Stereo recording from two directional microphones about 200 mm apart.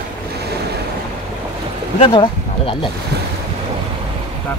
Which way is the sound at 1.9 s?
25° left (ahead or behind).